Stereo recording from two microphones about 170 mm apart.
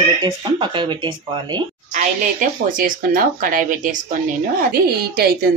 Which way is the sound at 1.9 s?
50° right (ahead or behind).